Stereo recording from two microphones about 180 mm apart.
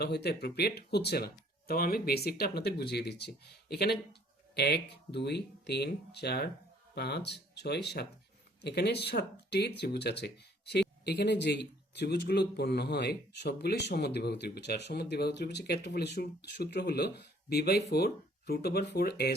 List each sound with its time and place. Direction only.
0.0 s speech: 65° left (ahead or behind)